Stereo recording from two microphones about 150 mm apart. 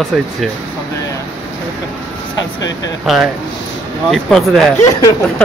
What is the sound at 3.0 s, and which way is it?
Speech, centre (ahead or behind).